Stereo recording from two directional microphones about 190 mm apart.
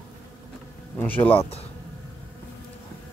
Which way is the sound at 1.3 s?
30° left (ahead or behind).